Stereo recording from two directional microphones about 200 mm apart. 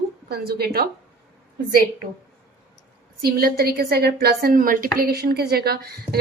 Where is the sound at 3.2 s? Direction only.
50° right (ahead or behind).